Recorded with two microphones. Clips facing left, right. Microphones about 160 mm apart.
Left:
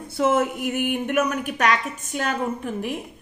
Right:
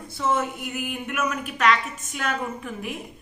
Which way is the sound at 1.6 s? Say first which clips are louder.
Right 1 dB; 40° left (ahead or behind).